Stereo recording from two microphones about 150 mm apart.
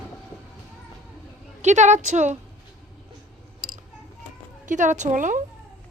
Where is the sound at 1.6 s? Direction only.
50° right (ahead or behind).